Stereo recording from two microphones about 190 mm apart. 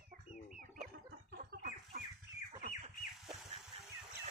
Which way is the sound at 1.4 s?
50° right (ahead or behind).